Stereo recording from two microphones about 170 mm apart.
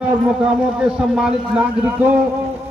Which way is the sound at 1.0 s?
5° right (ahead or behind).